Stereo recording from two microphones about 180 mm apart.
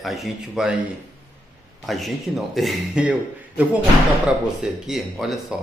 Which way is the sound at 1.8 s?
Centre (ahead or behind).